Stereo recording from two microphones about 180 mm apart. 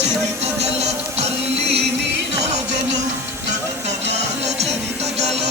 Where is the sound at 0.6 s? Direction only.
35° right (ahead or behind).